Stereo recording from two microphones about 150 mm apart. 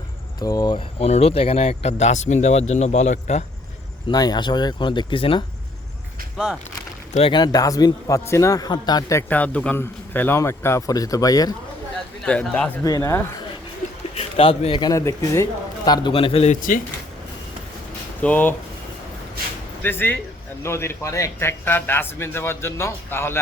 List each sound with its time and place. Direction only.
0.3 s speech: 25° left (ahead or behind)
0.9 s speech: 45° left (ahead or behind)
4.1 s a man's voice: 25° left (ahead or behind)
6.3 s speech: 5° right (ahead or behind)
7.1 s a man's voice: 35° left (ahead or behind)
9.3 s a man's voice: 10° left (ahead or behind)
12.2 s a man's voice: 5° left (ahead or behind)
12.8 s a man's voice: 20° left (ahead or behind)
14.2 s a man's voice: 40° left (ahead or behind)
18.2 s a man's voice: 10° left (ahead or behind)
19.8 s a man's voice: 15° left (ahead or behind)